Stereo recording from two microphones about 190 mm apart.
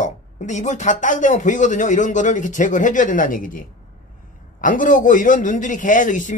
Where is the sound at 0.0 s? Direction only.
40° left (ahead or behind).